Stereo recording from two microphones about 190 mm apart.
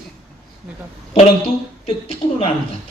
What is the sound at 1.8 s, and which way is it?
Speech, 30° left (ahead or behind).